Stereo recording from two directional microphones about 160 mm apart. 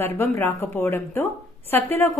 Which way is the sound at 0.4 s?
15° left (ahead or behind).